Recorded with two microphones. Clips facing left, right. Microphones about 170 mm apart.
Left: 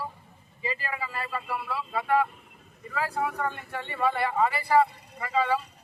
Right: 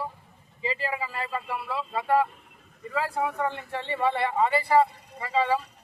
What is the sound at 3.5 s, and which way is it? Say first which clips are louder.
Speech: right 4 dB; 25° right (ahead or behind).